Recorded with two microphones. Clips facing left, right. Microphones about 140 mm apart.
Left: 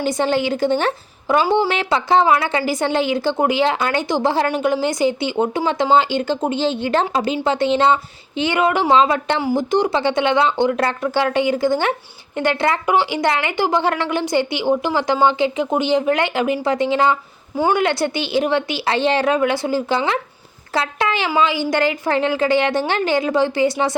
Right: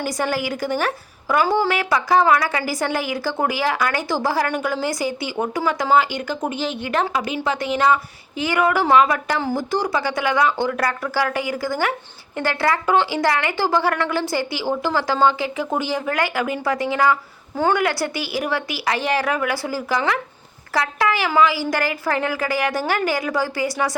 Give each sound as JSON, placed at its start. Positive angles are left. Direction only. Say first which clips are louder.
{"t": 0.0, "sound": "a woman's voice", "louder": "left 5 dB", "side_deg": 25}
{"t": 17.8, "sound": "a woman's voice", "louder": "left 3 dB", "side_deg": 25}